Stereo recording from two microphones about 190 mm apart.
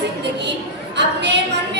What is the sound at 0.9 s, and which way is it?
Speech, 65° right (ahead or behind).